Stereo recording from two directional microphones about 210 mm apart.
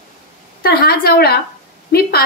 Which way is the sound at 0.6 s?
45° left (ahead or behind).